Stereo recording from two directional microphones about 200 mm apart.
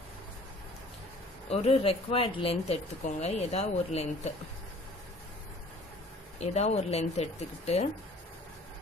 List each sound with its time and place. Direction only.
1.5 s speech: 30° left (ahead or behind)
6.4 s speech: 35° left (ahead or behind)